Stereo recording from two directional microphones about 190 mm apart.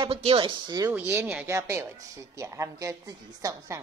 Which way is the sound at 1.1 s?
10° right (ahead or behind).